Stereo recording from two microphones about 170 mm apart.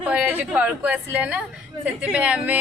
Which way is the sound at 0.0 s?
10° right (ahead or behind).